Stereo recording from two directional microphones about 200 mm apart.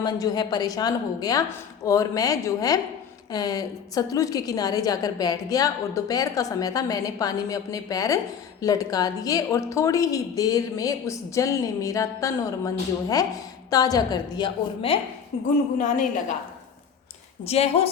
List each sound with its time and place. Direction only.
0.0 s a woman's voice: 20° left (ahead or behind)
17.4 s a woman's voice: 30° left (ahead or behind)